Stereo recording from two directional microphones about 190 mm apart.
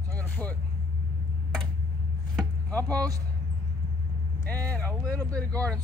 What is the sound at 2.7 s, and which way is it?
Speech, 10° left (ahead or behind).